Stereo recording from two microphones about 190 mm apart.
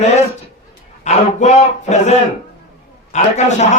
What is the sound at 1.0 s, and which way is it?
A man's voice, 35° left (ahead or behind).